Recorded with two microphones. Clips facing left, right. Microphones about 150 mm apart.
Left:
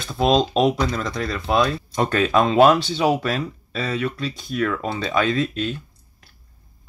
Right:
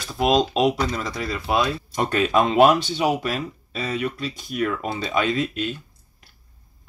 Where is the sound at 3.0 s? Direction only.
40° left (ahead or behind).